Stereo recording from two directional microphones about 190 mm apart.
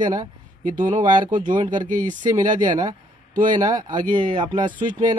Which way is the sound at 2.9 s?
45° right (ahead or behind).